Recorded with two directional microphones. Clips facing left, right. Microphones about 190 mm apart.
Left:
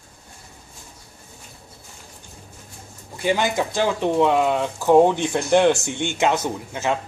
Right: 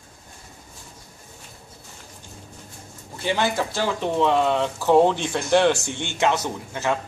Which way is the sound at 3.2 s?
15° left (ahead or behind).